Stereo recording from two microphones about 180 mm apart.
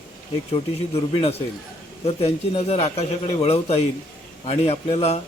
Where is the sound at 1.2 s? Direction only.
35° left (ahead or behind).